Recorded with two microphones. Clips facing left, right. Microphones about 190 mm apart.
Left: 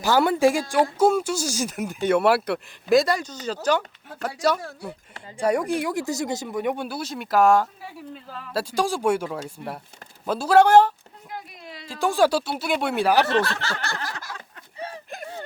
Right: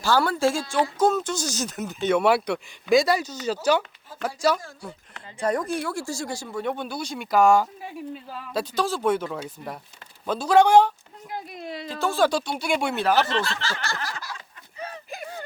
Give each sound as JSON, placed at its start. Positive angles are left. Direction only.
{"t": 0.0, "sound": "speech", "side_deg": 20}
{"t": 5.4, "sound": "speech", "side_deg": 10}
{"t": 11.9, "sound": "speech", "side_deg": 15}
{"t": 13.2, "sound": "speech", "side_deg": 60}
{"t": 13.8, "sound": "a sound", "side_deg": 50}
{"t": 14.8, "sound": "a sound", "side_deg": 30}